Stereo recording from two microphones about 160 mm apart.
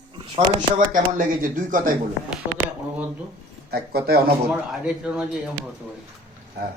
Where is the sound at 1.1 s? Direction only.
55° right (ahead or behind).